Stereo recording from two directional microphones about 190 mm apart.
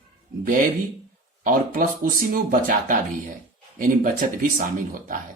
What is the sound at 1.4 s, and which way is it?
Speech, 45° right (ahead or behind).